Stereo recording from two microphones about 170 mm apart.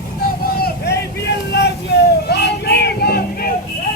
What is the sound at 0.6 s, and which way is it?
Vehicle, 75° left (ahead or behind).